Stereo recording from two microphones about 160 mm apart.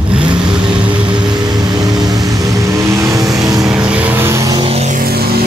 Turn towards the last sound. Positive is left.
turn(degrees=-75)  # may be behind; listen again after turning